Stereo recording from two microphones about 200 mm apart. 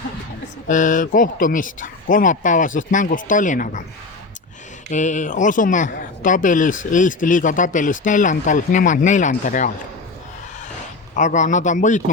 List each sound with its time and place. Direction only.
0.7 s speech: 40° left (ahead or behind)
4.9 s speech: 35° left (ahead or behind)
11.1 s speech: 40° left (ahead or behind)